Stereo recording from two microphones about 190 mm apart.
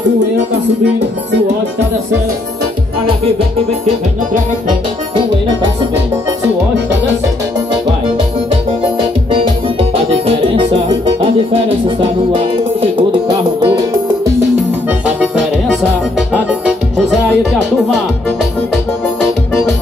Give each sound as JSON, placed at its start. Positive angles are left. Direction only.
{"t": 9.3, "sound": "music", "side_deg": -30}
{"t": 14.9, "sound": "accordion", "side_deg": -5}
{"t": 16.2, "sound": "music", "side_deg": -5}